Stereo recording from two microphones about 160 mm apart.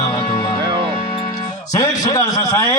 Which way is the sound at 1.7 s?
25° left (ahead or behind).